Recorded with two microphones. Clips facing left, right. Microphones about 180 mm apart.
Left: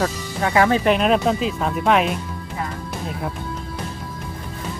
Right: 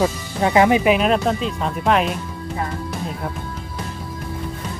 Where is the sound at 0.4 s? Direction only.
20° right (ahead or behind).